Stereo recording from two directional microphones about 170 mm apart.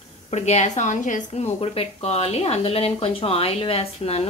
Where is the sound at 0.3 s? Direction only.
40° left (ahead or behind).